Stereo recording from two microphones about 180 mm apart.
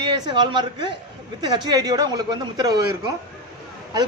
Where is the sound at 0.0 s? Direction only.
25° right (ahead or behind).